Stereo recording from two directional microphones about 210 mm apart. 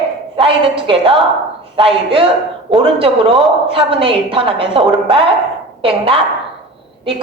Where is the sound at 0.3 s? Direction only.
25° right (ahead or behind).